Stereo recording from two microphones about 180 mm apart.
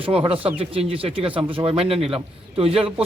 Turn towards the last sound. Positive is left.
turn(degrees=-30)  # may be behind; listen again after turning